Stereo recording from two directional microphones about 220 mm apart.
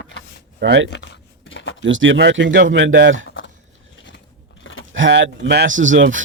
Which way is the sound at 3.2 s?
55° left (ahead or behind).